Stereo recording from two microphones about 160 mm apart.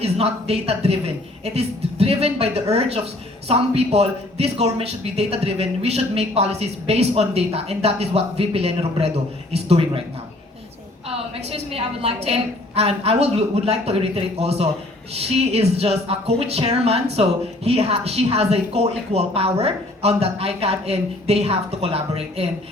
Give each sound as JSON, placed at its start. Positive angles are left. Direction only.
{"t": 0.0, "sound": "a woman's voice", "side_deg": -40}
{"t": 11.3, "sound": "a woman's voice", "side_deg": -40}